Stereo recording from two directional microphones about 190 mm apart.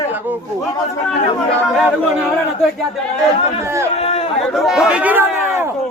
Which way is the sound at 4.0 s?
30° left (ahead or behind).